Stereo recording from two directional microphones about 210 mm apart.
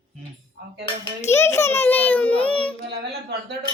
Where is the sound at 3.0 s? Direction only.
50° right (ahead or behind).